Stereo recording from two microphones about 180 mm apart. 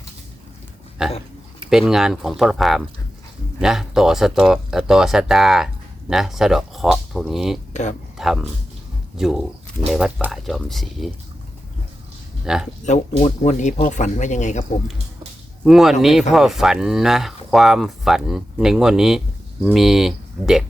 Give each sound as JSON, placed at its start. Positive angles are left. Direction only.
{"t": 1.0, "sound": "speech", "side_deg": -5}
{"t": 7.7, "sound": "speech", "side_deg": 40}
{"t": 8.2, "sound": "speech", "side_deg": 0}
{"t": 12.5, "sound": "speech", "side_deg": -5}
{"t": 12.8, "sound": "speech", "side_deg": 40}
{"t": 15.6, "sound": "speech", "side_deg": 0}